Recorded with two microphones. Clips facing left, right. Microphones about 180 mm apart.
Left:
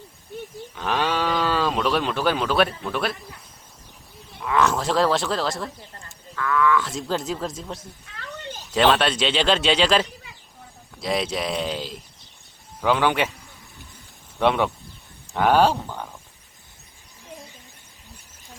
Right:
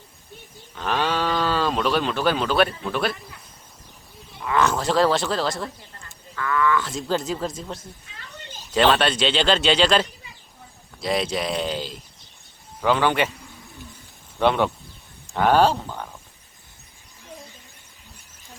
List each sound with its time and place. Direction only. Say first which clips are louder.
0.8 s speech: even; 15° left (ahead or behind)
4.4 s speech: even; centre (ahead or behind)
8.1 s a sound: left 9 dB; 65° left (ahead or behind)
8.7 s speech: even; 5° left (ahead or behind)
12.8 s speech: even; 10° left (ahead or behind)
14.3 s speech: right 1 dB; centre (ahead or behind)